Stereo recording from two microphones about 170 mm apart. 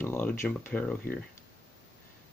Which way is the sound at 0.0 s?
10° left (ahead or behind).